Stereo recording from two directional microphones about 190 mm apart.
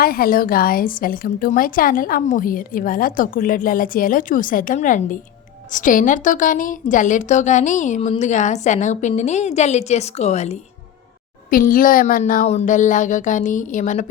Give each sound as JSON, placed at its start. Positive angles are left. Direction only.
{"t": 0.0, "sound": "a woman's voice", "side_deg": 50}
{"t": 11.5, "sound": "a woman's voice", "side_deg": 45}